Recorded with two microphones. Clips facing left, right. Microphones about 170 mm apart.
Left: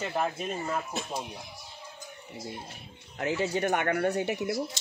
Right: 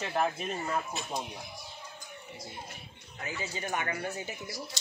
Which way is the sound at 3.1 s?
75° left (ahead or behind).